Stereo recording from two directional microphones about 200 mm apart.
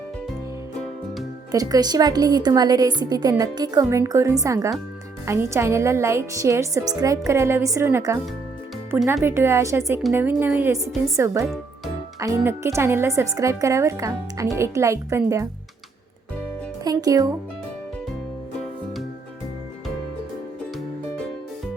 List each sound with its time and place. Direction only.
1.5 s a woman's voice: 20° right (ahead or behind)
9.2 s a woman's voice: 10° right (ahead or behind)
16.8 s speech: 20° right (ahead or behind)